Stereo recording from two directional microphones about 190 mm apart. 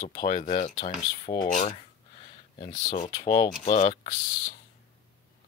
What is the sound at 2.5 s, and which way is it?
Speech, 25° left (ahead or behind).